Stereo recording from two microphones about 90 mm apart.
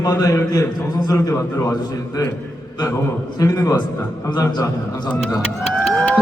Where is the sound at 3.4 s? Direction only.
35° left (ahead or behind).